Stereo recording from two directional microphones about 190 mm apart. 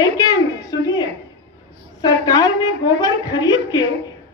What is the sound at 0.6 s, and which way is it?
Speech, 20° left (ahead or behind).